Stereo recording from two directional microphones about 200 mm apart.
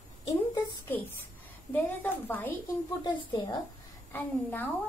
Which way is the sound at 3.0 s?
20° left (ahead or behind).